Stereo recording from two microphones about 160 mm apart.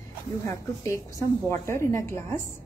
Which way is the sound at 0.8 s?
20° left (ahead or behind).